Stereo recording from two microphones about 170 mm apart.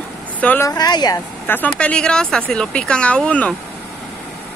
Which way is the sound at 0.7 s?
25° left (ahead or behind).